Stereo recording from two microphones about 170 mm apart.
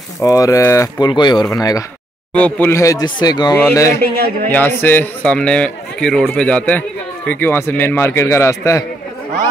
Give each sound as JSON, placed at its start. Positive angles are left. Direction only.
{"t": 0.2, "sound": "speech", "side_deg": 20}
{"t": 2.3, "sound": "speech", "side_deg": 10}
{"t": 3.5, "sound": "a man's voice", "side_deg": 15}